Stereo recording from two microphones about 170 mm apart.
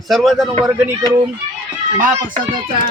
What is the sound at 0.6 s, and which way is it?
Speech, 20° right (ahead or behind).